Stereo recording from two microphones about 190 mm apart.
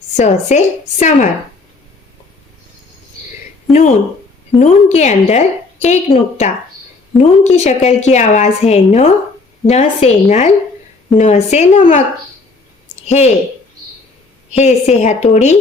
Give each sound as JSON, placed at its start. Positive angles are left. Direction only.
{"t": 0.2, "sound": "a woman's voice", "side_deg": 40}
{"t": 3.7, "sound": "speech", "side_deg": 0}
{"t": 4.6, "sound": "a woman's voice", "side_deg": 40}
{"t": 13.1, "sound": "speech", "side_deg": 35}
{"t": 14.5, "sound": "a woman's voice", "side_deg": 35}